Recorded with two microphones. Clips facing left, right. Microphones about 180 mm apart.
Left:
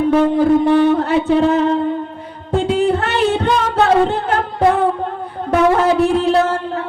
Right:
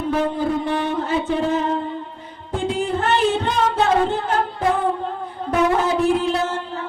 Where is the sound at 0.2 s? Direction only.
65° left (ahead or behind).